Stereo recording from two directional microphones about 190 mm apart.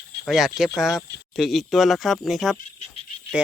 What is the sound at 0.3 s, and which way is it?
Speech, centre (ahead or behind).